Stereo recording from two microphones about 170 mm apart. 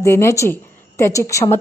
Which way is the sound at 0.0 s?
15° left (ahead or behind).